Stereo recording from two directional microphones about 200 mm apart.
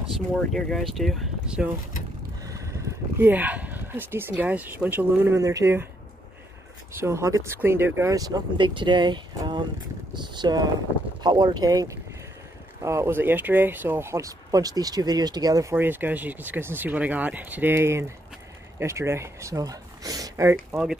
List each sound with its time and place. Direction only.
0.5 s speech: centre (ahead or behind)
2.4 s speech: 15° right (ahead or behind)
6.9 s speech: 15° right (ahead or behind)
20.7 s speech: 5° right (ahead or behind)